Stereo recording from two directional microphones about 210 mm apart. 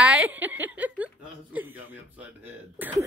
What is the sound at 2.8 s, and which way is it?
Cough, 10° right (ahead or behind).